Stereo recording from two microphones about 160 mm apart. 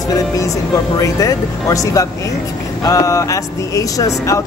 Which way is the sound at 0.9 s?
20° left (ahead or behind).